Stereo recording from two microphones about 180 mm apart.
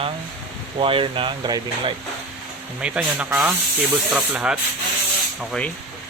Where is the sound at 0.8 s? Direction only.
30° right (ahead or behind).